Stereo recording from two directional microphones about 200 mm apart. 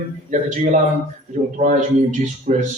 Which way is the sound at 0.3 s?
35° right (ahead or behind).